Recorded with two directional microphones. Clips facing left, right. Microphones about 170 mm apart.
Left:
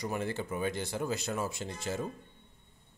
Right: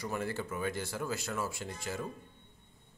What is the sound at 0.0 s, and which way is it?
Speech, 20° left (ahead or behind).